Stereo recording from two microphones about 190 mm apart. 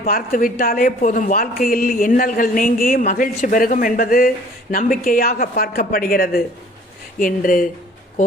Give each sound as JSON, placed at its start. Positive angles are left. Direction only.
{"t": 0.0, "sound": "a woman's voice", "side_deg": 50}